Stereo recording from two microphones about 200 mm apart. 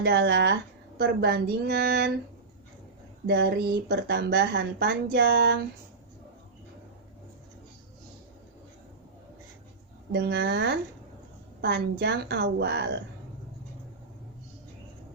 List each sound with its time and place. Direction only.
0.0 s a woman's voice: 55° right (ahead or behind)
3.2 s a woman's voice: 55° right (ahead or behind)
10.1 s a woman's voice: 55° right (ahead or behind)